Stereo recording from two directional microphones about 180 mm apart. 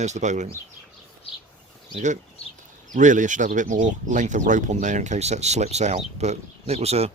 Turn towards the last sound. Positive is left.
turn(degrees=-35)  # may be behind; listen again after turning